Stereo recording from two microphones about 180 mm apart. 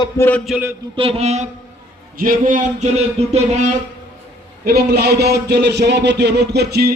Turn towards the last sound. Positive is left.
turn(degrees=-60)  # may be behind; listen again after turning